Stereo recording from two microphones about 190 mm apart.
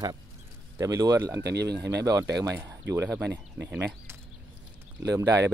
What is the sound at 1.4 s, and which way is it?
Speech, 60° right (ahead or behind).